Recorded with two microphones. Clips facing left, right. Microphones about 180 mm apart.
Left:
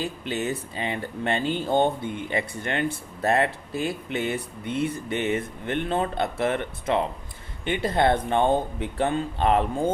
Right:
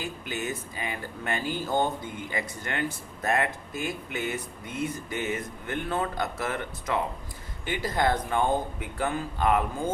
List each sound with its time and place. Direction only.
0.0 s speech: 30° left (ahead or behind)